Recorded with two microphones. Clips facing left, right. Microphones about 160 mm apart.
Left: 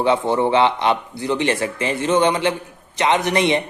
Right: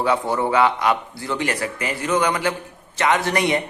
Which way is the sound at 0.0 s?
25° left (ahead or behind).